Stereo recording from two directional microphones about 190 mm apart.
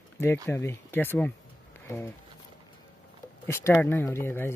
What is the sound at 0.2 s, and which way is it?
Speech, 15° left (ahead or behind).